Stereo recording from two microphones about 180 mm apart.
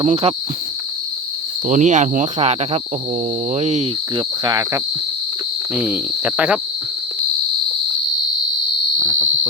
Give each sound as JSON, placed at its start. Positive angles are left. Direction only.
{"t": 0.0, "sound": "speech", "side_deg": -35}
{"t": 1.6, "sound": "cricket", "side_deg": -45}
{"t": 3.5, "sound": "speech", "side_deg": -40}
{"t": 4.4, "sound": "cricket", "side_deg": -20}
{"t": 5.7, "sound": "speech", "side_deg": -10}
{"t": 9.0, "sound": "insect", "side_deg": -10}